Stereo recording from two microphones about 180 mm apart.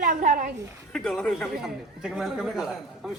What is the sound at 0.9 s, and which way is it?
A man's voice, 5° left (ahead or behind).